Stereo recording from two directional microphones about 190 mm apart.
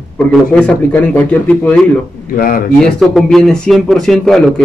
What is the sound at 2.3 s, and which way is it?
Speech, 50° left (ahead or behind).